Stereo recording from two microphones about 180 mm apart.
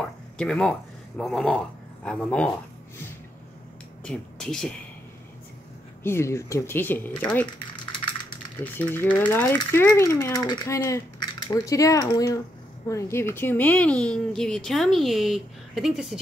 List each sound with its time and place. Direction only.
0.4 s speech: 5° left (ahead or behind)
4.0 s speech: 5° left (ahead or behind)
6.0 s speech: 15° left (ahead or behind)
7.4 s typing: 25° left (ahead or behind)
8.7 s speech: 10° left (ahead or behind)